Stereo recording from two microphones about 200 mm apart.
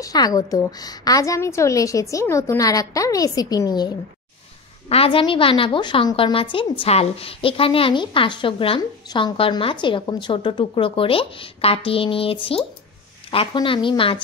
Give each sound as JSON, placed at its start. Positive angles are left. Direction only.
{"t": 0.0, "sound": "a woman's voice", "side_deg": 20}